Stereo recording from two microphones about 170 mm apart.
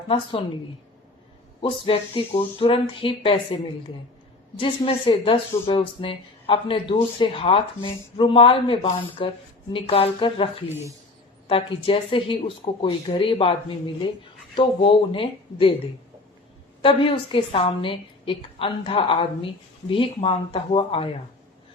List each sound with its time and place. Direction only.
0.1 s speech: 30° left (ahead or behind)
1.6 s speech: 35° left (ahead or behind)
4.6 s speech: 30° left (ahead or behind)
10.7 s a woman's voice: 15° right (ahead or behind)
11.4 s speech: 30° left (ahead or behind)
16.8 s speech: 30° left (ahead or behind)